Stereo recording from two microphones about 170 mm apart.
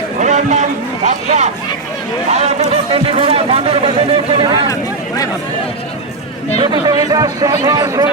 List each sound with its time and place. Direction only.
0.2 s run: 45° right (ahead or behind)
2.3 s a man's voice: 40° right (ahead or behind)
4.7 s a sound: 20° left (ahead or behind)
6.6 s speech: 25° right (ahead or behind)